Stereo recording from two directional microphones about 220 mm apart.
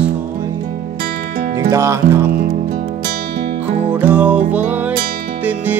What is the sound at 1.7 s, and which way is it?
Music, 15° right (ahead or behind).